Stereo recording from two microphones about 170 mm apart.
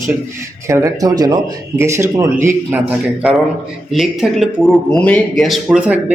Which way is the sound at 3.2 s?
Centre (ahead or behind).